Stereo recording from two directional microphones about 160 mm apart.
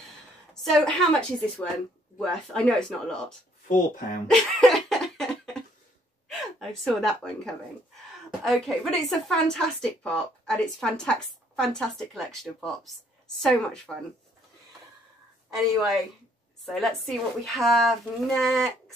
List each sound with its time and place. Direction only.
0.7 s a woman's voice: centre (ahead or behind)
3.6 s speech: 55° left (ahead or behind)
4.3 s laughter: centre (ahead or behind)
6.2 s a woman's voice: centre (ahead or behind)
16.6 s a woman's voice: centre (ahead or behind)